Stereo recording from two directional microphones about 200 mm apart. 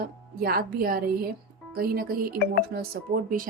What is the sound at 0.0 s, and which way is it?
Speech, 50° right (ahead or behind).